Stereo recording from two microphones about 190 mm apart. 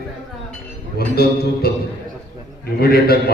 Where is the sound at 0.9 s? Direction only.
55° left (ahead or behind).